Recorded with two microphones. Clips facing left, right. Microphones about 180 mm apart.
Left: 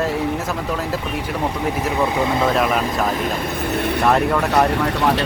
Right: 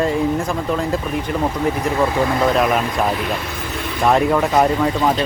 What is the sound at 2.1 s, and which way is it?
Speech, 20° left (ahead or behind).